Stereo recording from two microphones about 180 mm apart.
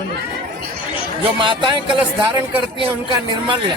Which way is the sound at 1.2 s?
30° right (ahead or behind).